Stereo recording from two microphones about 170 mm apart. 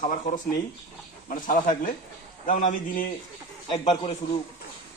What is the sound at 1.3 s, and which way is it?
A man's voice, 50° left (ahead or behind).